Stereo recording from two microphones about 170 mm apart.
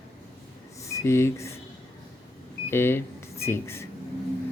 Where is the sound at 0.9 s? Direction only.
15° left (ahead or behind).